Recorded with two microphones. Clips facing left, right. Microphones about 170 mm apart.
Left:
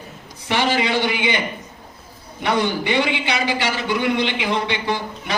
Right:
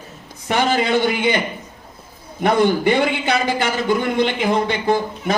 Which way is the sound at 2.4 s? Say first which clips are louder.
Right 5 dB; 50° right (ahead or behind).